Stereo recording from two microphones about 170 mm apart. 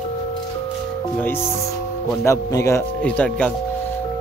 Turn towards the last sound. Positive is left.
turn(degrees=5)  # may be behind; listen again after turning